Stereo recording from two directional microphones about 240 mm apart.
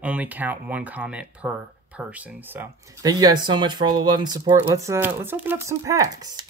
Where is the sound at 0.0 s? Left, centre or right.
Centre.